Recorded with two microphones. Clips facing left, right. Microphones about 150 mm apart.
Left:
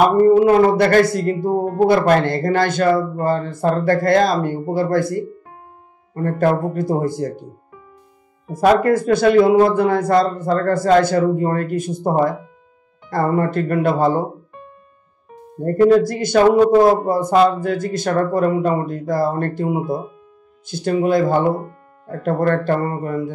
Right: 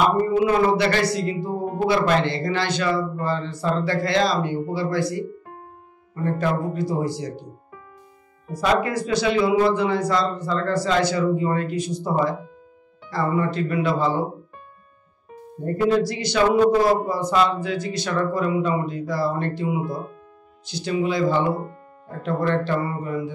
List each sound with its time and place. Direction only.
0.0 s a man's voice: 50° left (ahead or behind)
8.5 s a man's voice: 50° left (ahead or behind)
15.6 s a man's voice: 50° left (ahead or behind)